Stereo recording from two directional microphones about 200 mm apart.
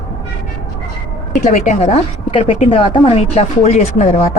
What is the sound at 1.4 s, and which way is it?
A woman's voice, 35° left (ahead or behind).